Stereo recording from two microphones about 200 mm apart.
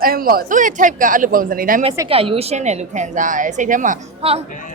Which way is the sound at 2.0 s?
30° right (ahead or behind).